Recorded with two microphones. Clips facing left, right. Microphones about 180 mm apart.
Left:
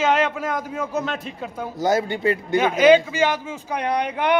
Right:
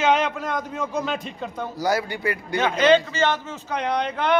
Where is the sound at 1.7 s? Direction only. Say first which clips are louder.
Left 4 dB; 20° left (ahead or behind).